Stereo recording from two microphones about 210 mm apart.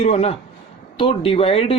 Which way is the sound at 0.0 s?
30° left (ahead or behind).